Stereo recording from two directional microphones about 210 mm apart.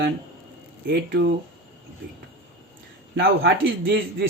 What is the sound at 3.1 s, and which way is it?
Speech, 50° right (ahead or behind).